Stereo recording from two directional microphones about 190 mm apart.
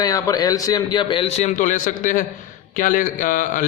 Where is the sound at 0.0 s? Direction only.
20° left (ahead or behind).